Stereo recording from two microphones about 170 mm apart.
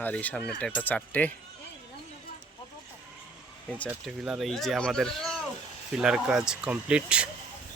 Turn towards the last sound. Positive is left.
turn(degrees=-5)  # may be behind; listen again after turning